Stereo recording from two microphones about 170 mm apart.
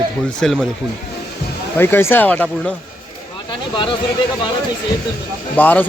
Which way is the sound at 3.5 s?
30° left (ahead or behind).